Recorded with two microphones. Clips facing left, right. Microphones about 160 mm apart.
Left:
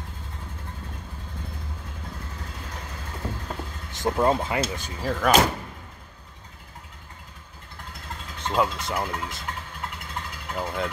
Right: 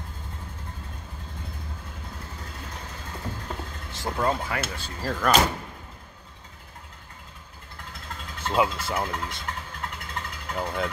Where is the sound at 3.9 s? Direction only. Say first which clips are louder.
Left 4 dB; 20° left (ahead or behind).